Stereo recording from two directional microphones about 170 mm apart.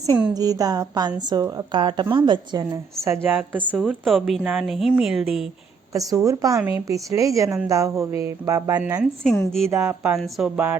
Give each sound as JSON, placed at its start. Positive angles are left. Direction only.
{"t": 0.3, "sound": "a woman's voice", "side_deg": -20}
{"t": 3.2, "sound": "a woman's voice", "side_deg": -10}
{"t": 5.9, "sound": "a woman's voice", "side_deg": -20}
{"t": 9.0, "sound": "a woman's voice", "side_deg": 5}
{"t": 9.6, "sound": "speech", "side_deg": -15}
{"t": 10.2, "sound": "a woman's voice", "side_deg": 0}